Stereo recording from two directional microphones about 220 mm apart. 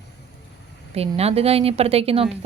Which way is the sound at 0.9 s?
30° right (ahead or behind).